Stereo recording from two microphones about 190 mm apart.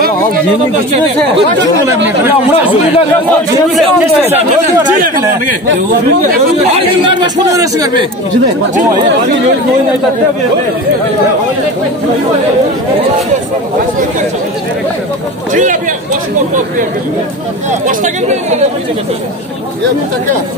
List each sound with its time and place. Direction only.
2.0 s speech: 10° right (ahead or behind)
5.0 s speech: 45° right (ahead or behind)
6.6 s speech: 30° right (ahead or behind)
15.5 s speech: 40° right (ahead or behind)
17.8 s speech: 40° right (ahead or behind)